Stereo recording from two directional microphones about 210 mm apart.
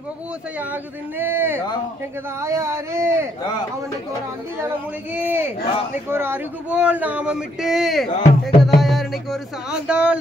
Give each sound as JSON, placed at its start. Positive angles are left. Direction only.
{"t": 1.1, "sound": "speech", "side_deg": -10}
{"t": 5.1, "sound": "speech", "side_deg": -10}
{"t": 8.1, "sound": "music", "side_deg": 35}
{"t": 8.5, "sound": "music", "side_deg": 0}